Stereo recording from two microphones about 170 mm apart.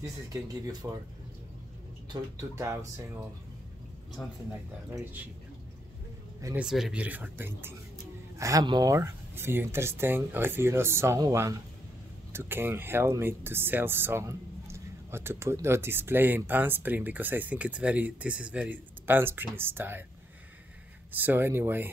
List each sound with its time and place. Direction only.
0.0 s speech: 20° right (ahead or behind)
2.0 s speech: 20° right (ahead or behind)
6.6 s speech: 5° right (ahead or behind)
21.1 s speech: 10° right (ahead or behind)